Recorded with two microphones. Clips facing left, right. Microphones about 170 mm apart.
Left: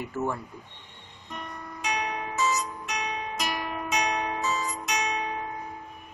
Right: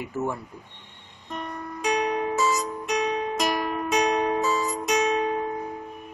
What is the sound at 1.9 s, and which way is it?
Music, 35° right (ahead or behind).